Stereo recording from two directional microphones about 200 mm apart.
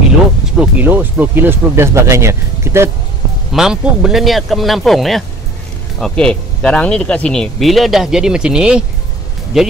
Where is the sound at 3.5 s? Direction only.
5° right (ahead or behind).